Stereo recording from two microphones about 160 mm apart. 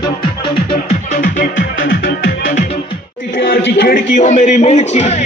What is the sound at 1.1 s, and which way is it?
Music, 55° left (ahead or behind).